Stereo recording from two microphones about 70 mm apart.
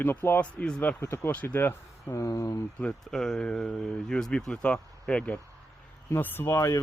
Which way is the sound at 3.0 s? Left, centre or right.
Centre.